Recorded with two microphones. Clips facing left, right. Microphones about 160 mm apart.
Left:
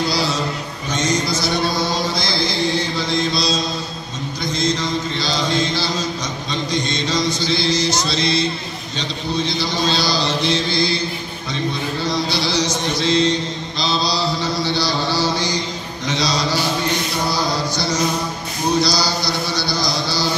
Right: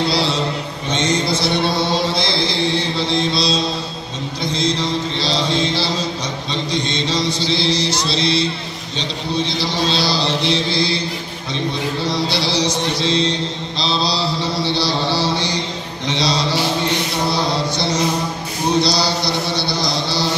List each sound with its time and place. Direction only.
0.0 s a sound: 30° right (ahead or behind)
0.8 s mantra: 25° right (ahead or behind)
12.1 s mantra: 30° right (ahead or behind)
17.3 s chant: 25° right (ahead or behind)